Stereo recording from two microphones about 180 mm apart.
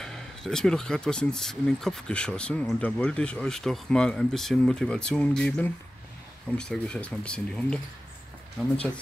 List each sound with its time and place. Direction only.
0.0 s speech: 5° left (ahead or behind)